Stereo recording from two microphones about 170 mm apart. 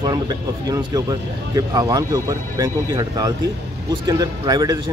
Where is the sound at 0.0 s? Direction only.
25° right (ahead or behind).